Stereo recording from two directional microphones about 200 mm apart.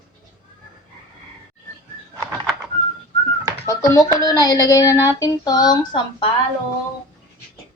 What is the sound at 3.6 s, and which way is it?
Speech, 15° left (ahead or behind).